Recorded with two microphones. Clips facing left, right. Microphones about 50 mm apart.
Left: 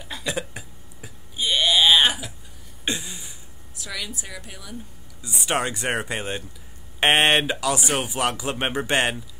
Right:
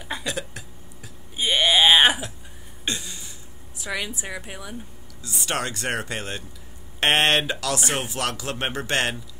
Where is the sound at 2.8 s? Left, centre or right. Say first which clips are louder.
Left 2 dB; centre.